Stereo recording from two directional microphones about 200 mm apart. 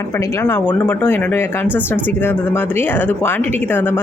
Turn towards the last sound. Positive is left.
turn(degrees=10)  # may be behind; listen again after turning